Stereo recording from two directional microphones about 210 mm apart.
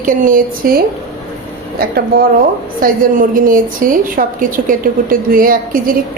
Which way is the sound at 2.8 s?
40° right (ahead or behind).